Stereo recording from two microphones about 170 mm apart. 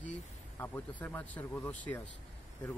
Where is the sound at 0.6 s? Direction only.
10° left (ahead or behind).